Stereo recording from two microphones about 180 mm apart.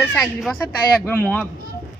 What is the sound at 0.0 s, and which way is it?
Speech, 5° left (ahead or behind).